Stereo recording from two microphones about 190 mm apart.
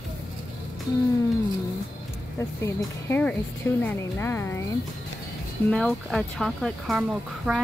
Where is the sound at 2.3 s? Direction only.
15° left (ahead or behind).